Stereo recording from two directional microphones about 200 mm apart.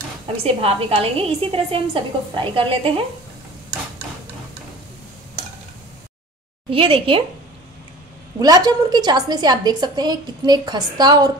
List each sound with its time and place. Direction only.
0.4 s a woman's voice: 30° right (ahead or behind)
6.7 s a woman's voice: 25° right (ahead or behind)
8.4 s a woman's voice: 20° right (ahead or behind)